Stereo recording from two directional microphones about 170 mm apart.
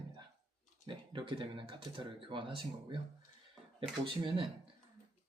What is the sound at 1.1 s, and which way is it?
Speech, 30° right (ahead or behind).